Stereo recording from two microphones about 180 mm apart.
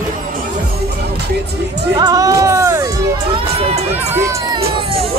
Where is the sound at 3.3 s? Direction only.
35° right (ahead or behind).